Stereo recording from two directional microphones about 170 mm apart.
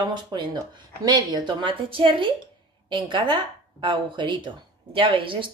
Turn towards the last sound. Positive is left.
turn(degrees=-30)  # may be behind; listen again after turning